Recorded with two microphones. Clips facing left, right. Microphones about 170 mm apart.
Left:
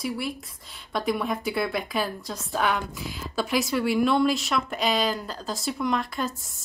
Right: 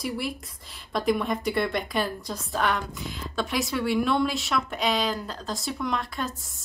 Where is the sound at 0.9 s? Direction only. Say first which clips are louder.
Right 1 dB; centre (ahead or behind).